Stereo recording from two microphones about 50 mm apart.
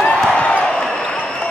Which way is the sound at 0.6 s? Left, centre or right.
Centre.